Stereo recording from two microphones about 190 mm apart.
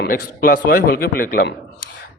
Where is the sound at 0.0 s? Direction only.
50° left (ahead or behind).